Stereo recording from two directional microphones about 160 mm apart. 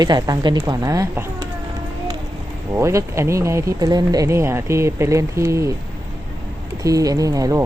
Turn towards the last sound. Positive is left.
turn(degrees=-20)  # may be behind; listen again after turning